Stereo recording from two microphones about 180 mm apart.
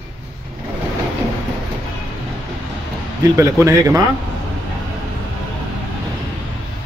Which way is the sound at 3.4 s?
15° right (ahead or behind).